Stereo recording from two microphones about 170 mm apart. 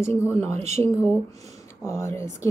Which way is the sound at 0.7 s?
15° left (ahead or behind).